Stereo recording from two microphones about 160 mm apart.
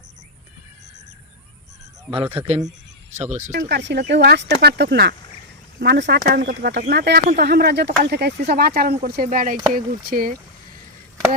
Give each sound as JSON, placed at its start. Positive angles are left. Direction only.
{"t": 2.0, "sound": "speech", "side_deg": -35}
{"t": 3.2, "sound": "speech", "side_deg": -50}
{"t": 3.7, "sound": "speech", "side_deg": -90}